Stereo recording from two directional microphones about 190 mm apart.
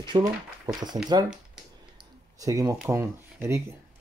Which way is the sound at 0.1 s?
20° right (ahead or behind).